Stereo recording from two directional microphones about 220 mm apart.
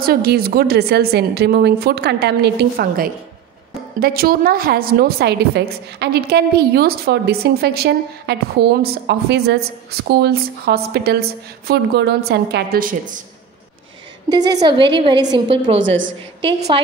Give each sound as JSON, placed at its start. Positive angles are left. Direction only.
{"t": 0.0, "sound": "a woman's voice", "side_deg": -45}
{"t": 14.3, "sound": "a woman's voice", "side_deg": -20}